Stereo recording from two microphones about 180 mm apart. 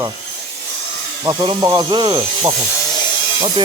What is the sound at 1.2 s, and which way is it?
Speech, 20° right (ahead or behind).